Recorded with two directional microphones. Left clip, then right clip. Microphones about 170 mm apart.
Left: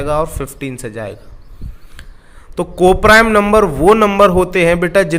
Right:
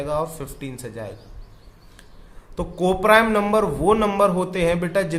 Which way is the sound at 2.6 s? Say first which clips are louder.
Left 10 dB; 35° left (ahead or behind).